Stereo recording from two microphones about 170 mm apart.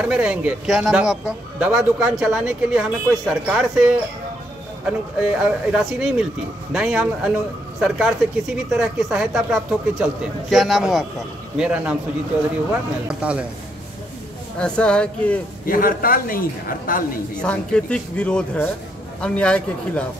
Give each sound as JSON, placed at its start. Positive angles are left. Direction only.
{"t": 0.0, "sound": "a man's voice", "side_deg": -5}
{"t": 14.6, "sound": "speech", "side_deg": 5}
{"t": 15.6, "sound": "a man's voice", "side_deg": 55}
{"t": 17.4, "sound": "speech", "side_deg": 5}